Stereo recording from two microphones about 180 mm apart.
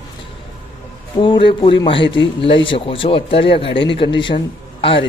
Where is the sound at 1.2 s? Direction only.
25° left (ahead or behind).